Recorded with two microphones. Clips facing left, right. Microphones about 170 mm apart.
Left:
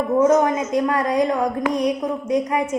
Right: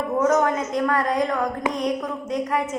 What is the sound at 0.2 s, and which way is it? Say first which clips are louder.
A woman's voice: left 3 dB; 20° left (ahead or behind).